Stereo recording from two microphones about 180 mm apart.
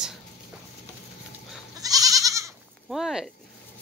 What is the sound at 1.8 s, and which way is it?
Goat, 20° right (ahead or behind).